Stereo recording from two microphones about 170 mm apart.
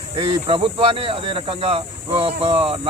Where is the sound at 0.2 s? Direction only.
30° right (ahead or behind).